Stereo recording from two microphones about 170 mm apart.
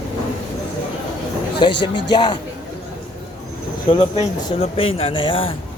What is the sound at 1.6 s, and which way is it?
Speech, 25° left (ahead or behind).